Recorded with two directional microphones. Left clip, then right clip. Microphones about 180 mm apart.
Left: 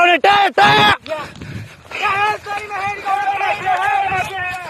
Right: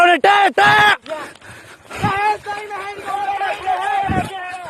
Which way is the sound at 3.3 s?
25° left (ahead or behind).